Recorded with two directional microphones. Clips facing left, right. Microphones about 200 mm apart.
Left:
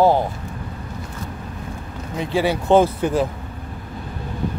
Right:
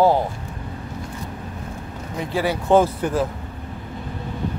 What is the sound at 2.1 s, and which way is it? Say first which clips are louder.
Speech: left 3 dB; 25° left (ahead or behind).